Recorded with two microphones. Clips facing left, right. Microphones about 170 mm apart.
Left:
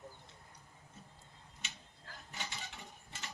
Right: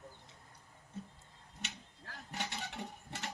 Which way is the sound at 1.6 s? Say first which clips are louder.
Right 5 dB; 65° right (ahead or behind).